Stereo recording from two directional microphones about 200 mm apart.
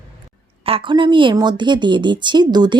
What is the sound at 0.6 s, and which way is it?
A woman's voice, 25° right (ahead or behind).